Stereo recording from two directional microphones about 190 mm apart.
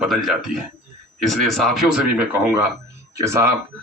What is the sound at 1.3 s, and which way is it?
A man's voice, centre (ahead or behind).